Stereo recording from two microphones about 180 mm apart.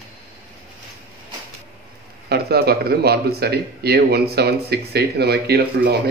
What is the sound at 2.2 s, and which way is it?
Speech, 60° right (ahead or behind).